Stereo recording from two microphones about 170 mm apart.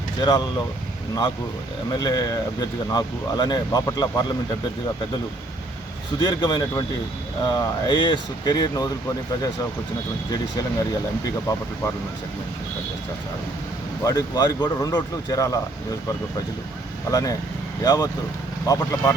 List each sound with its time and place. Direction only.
0.2 s speech: 25° left (ahead or behind)
2.0 s speech: 25° left (ahead or behind)
6.1 s speech: 25° left (ahead or behind)
14.0 s speech: 20° left (ahead or behind)
17.1 s speech: 20° left (ahead or behind)